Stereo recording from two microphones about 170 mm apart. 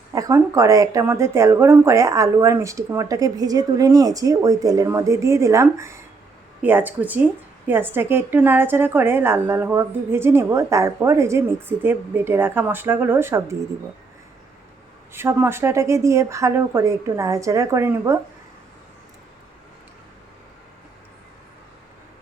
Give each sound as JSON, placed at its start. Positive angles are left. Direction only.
{"t": 0.1, "sound": "a woman's voice", "side_deg": -20}
{"t": 15.1, "sound": "a woman's voice", "side_deg": -15}